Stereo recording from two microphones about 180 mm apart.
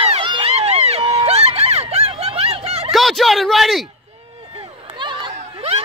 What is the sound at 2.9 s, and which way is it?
Speech, centre (ahead or behind).